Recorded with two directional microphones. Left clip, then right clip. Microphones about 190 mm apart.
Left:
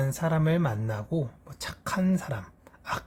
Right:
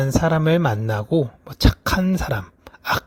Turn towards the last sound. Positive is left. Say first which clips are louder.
# right 11 dB
turn(degrees=-40)  # may be behind; listen again after turning